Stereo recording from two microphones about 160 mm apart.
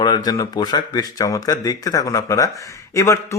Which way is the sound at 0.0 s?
25° left (ahead or behind).